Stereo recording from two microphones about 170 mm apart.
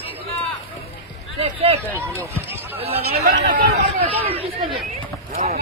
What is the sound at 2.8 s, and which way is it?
Speech, 35° right (ahead or behind).